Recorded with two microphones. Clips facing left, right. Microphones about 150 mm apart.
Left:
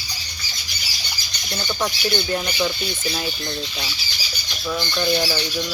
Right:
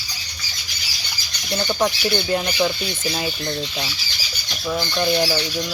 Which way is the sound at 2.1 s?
15° right (ahead or behind).